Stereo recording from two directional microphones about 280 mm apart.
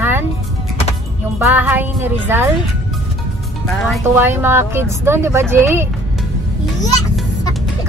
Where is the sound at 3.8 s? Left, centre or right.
Centre.